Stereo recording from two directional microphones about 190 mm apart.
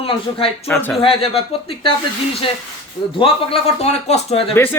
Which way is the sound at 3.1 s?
30° left (ahead or behind).